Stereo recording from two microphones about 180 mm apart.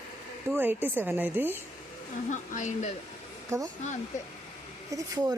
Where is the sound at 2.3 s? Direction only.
45° left (ahead or behind).